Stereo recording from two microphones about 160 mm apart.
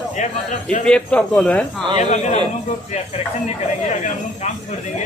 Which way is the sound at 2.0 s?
45° left (ahead or behind).